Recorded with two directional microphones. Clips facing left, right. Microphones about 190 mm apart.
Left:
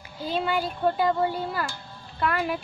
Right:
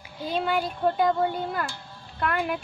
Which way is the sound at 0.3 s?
Centre (ahead or behind).